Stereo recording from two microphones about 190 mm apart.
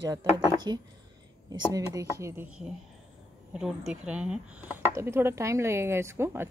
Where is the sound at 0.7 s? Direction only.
20° right (ahead or behind).